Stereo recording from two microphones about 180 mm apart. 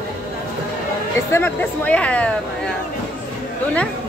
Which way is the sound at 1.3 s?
10° left (ahead or behind).